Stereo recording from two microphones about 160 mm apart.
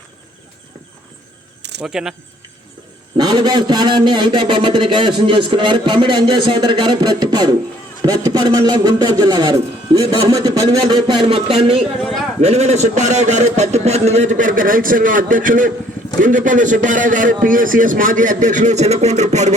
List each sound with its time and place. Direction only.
1.8 s speech: 5° right (ahead or behind)
3.2 s a man's voice: 25° right (ahead or behind); by 19.5 s 45° right (ahead or behind)